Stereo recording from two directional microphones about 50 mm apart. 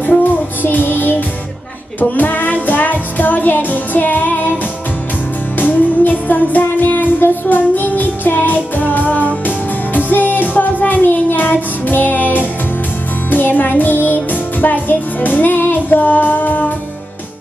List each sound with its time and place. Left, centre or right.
0.0 s music: left
5.6 s music: left